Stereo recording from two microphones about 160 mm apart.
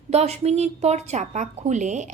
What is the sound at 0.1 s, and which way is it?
A woman's voice, 40° right (ahead or behind).